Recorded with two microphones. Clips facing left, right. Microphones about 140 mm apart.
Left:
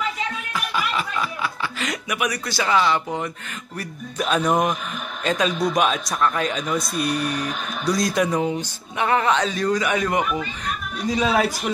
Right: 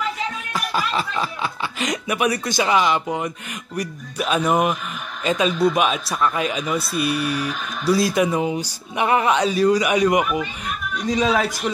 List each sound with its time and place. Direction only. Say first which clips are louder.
0.5 s a man's voice: right 3 dB; 40° right (ahead or behind); by 10.7 s 10° right (ahead or behind)
11.1 s a man's voice: even; 5° left (ahead or behind)